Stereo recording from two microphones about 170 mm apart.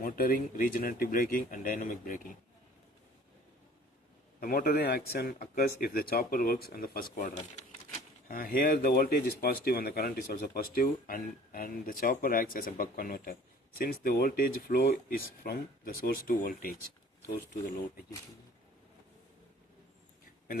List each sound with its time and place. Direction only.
0.0 s speech: 55° left (ahead or behind)
4.4 s speech: 55° left (ahead or behind)